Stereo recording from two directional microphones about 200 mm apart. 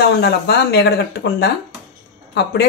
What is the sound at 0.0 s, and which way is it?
A woman's voice, 55° left (ahead or behind).